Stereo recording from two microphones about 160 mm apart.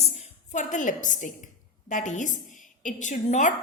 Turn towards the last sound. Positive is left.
turn(degrees=50)  # may be behind; listen again after turning